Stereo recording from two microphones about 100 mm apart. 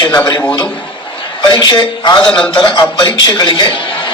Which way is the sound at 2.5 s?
50° left (ahead or behind).